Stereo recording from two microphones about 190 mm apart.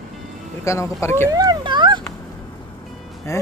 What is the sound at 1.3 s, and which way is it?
Speech, 20° right (ahead or behind).